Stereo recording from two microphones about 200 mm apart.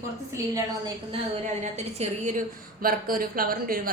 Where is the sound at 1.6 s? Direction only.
35° right (ahead or behind).